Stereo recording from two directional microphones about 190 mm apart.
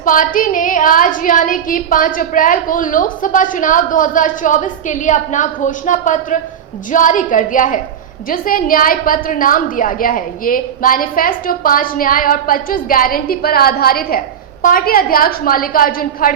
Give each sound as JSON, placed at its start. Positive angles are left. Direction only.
{"t": 0.0, "sound": "a woman's voice", "side_deg": 45}